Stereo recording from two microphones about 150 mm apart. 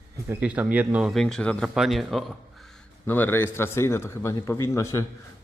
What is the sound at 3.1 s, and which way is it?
A man's voice, 15° left (ahead or behind).